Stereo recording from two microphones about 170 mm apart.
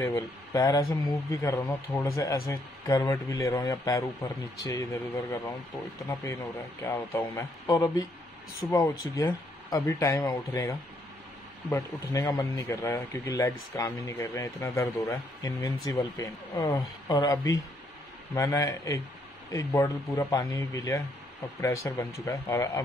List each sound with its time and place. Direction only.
0.0 s speech: 20° left (ahead or behind)
6.8 s speech: 15° left (ahead or behind)